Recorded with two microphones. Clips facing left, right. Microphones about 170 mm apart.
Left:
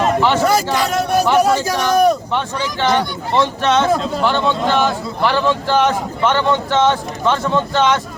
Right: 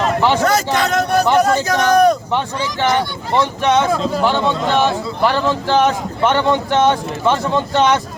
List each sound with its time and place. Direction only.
0.4 s a man's voice: 10° left (ahead or behind)
3.3 s speech: 15° right (ahead or behind)